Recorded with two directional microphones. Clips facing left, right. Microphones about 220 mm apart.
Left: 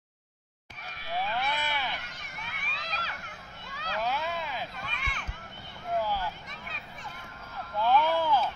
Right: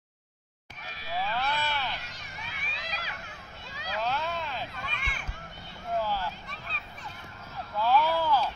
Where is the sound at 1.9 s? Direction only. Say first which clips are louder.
Even; 55° left (ahead or behind).